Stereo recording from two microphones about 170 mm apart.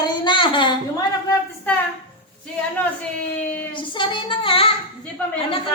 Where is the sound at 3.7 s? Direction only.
30° left (ahead or behind).